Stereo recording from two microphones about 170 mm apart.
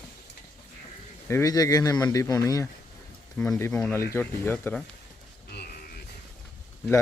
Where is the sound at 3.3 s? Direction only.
5° left (ahead or behind).